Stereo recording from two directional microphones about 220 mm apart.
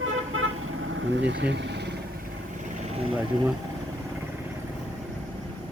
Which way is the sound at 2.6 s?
25° right (ahead or behind).